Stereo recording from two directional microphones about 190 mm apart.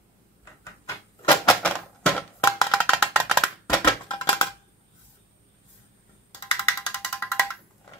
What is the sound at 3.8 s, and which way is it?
Music, 20° left (ahead or behind).